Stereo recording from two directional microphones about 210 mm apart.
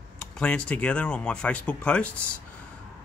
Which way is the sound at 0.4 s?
5° left (ahead or behind).